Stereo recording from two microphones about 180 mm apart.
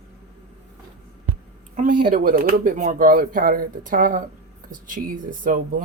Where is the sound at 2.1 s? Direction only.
50° right (ahead or behind).